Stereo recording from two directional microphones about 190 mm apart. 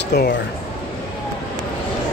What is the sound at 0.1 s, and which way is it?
Speech, 60° left (ahead or behind).